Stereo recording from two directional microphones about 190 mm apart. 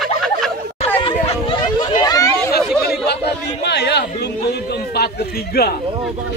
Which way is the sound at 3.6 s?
60° left (ahead or behind).